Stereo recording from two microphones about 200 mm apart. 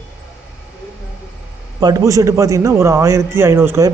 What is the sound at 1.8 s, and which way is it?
A man's voice, 15° right (ahead or behind).